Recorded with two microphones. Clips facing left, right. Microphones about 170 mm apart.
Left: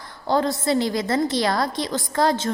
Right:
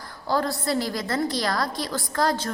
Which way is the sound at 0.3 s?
20° left (ahead or behind).